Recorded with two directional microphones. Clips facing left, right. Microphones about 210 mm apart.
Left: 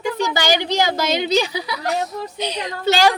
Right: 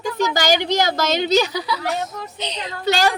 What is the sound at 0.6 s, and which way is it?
A woman's voice, 10° left (ahead or behind).